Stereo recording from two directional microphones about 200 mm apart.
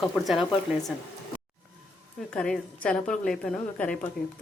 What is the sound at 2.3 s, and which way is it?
A woman's voice, 5° left (ahead or behind).